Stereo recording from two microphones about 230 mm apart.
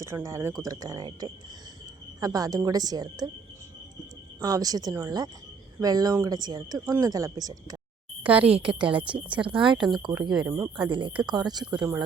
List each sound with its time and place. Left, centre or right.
0.0 s speech: centre
4.4 s speech: centre
9.6 s speech: right
10.9 s speech: right
11.8 s speech: centre